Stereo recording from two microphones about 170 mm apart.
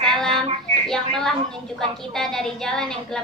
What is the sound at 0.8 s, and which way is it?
A woman's voice, 5° left (ahead or behind).